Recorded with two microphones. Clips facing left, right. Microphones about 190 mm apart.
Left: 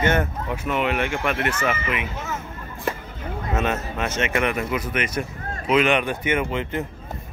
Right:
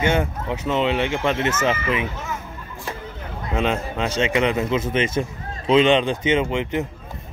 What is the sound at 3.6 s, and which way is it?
Speech, 15° right (ahead or behind).